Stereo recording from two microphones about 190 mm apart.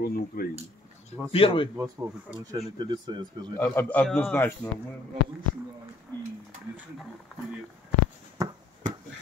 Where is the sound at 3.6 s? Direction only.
10° left (ahead or behind).